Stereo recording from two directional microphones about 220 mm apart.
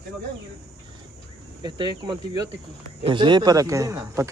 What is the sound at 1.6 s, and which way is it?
Speech, 20° right (ahead or behind).